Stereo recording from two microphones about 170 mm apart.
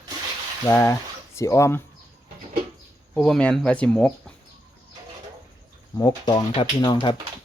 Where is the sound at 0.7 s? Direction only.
15° left (ahead or behind).